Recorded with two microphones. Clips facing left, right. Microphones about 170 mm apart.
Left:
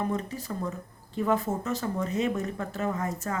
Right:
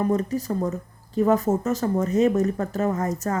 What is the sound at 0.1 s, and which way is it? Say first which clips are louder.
Speech: right 8 dB; 45° right (ahead or behind).